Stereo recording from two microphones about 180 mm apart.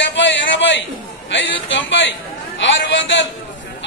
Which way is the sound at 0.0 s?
90° left.